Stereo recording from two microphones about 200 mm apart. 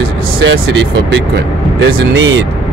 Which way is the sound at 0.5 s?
65° right (ahead or behind).